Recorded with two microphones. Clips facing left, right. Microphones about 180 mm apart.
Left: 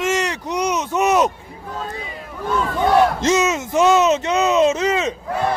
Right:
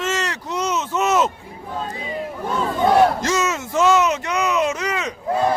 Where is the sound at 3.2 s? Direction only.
20° left (ahead or behind).